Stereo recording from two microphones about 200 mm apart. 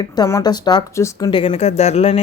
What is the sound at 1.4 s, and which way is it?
Speech, 30° left (ahead or behind).